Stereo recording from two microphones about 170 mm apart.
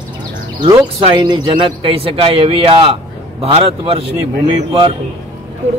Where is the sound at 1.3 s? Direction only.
30° right (ahead or behind).